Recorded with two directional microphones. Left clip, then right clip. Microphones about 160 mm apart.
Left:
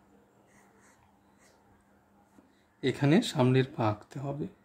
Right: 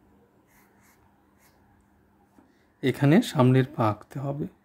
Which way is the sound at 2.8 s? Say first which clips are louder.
Right 4 dB; 30° right (ahead or behind).